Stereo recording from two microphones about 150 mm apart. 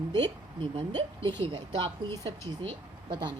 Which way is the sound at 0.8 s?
35° right (ahead or behind).